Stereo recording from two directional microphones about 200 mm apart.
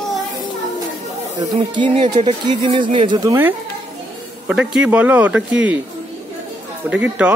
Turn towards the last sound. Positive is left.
turn(degrees=-5)  # may be behind; listen again after turning